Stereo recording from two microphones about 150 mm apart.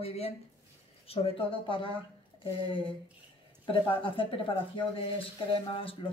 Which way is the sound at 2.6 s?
35° left (ahead or behind).